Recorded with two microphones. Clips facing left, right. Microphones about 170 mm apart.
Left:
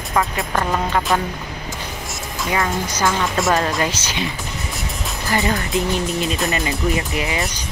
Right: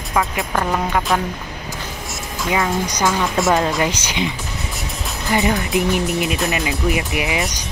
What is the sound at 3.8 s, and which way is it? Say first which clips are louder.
Speech: right 2 dB; 15° right (ahead or behind).